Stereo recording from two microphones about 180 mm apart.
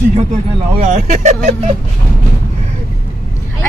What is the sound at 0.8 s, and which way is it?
Speech, 40° right (ahead or behind).